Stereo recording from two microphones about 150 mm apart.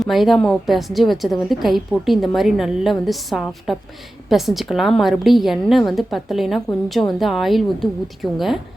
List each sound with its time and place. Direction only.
0.0 s a woman's voice: centre (ahead or behind)